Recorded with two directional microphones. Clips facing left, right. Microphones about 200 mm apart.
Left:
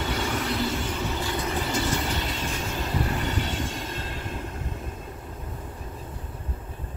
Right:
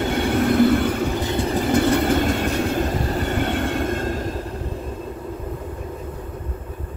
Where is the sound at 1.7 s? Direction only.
60° right (ahead or behind); by 4.4 s 45° right (ahead or behind).